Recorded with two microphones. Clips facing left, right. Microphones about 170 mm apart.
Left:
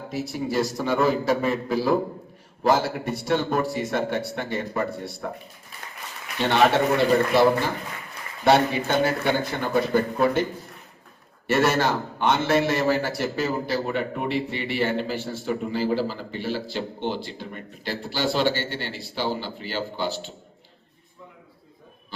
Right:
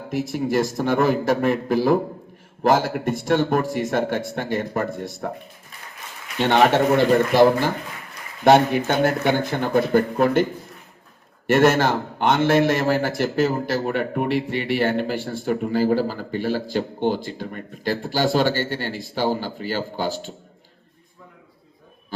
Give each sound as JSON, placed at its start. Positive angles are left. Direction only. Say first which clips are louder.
{"t": 0.1, "sound": "a man's voice", "louder": "right 5 dB", "side_deg": -50}
{"t": 6.4, "sound": "a man's voice", "louder": "right 3 dB", "side_deg": -50}
{"t": 8.4, "sound": "a man's voice", "louder": "right 4 dB", "side_deg": -50}
{"t": 11.4, "sound": "a man's voice", "louder": "right 4 dB", "side_deg": -50}